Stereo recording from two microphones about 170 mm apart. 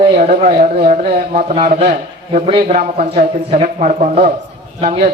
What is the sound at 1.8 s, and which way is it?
Speech, 40° right (ahead or behind).